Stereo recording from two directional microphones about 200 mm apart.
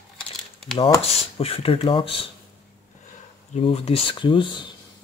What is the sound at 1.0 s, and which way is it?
Speech, 30° left (ahead or behind).